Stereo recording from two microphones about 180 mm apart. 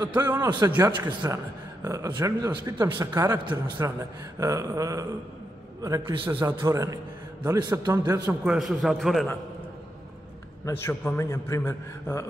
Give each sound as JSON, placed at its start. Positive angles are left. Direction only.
{"t": 0.0, "sound": "a man's voice", "side_deg": -10}
{"t": 1.0, "sound": "a man's voice", "side_deg": -25}
{"t": 8.5, "sound": "a man's voice", "side_deg": 0}
{"t": 10.6, "sound": "a man's voice", "side_deg": 15}